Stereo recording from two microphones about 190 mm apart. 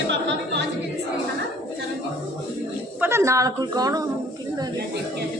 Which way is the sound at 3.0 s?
15° right (ahead or behind).